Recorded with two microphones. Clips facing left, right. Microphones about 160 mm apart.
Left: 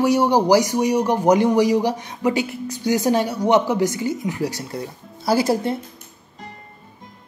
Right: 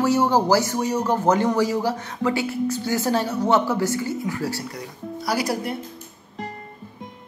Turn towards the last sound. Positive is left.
turn(degrees=25)  # may be behind; listen again after turning